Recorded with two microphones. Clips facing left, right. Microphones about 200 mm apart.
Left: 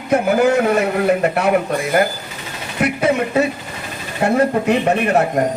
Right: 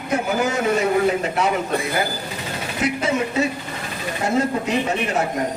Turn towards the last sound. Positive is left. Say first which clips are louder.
# left 6 dB
turn(degrees=60)  # may be behind; listen again after turning